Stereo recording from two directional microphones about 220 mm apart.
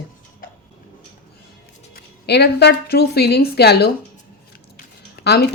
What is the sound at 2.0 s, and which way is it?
A woman's voice, 50° left (ahead or behind).